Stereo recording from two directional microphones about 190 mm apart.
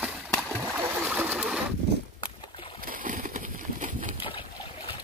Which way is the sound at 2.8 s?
45° right (ahead or behind).